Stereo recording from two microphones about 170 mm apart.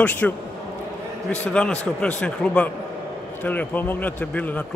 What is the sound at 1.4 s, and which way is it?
A man's voice, 10° left (ahead or behind).